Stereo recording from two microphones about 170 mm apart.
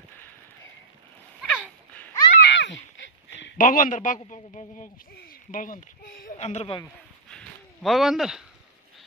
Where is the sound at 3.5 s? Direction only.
50° left (ahead or behind).